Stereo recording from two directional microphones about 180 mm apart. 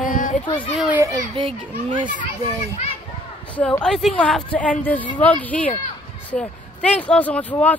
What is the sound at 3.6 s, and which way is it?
A woman's voice, 5° left (ahead or behind).